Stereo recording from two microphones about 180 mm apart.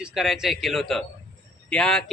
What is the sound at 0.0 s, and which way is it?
A man's voice, centre (ahead or behind).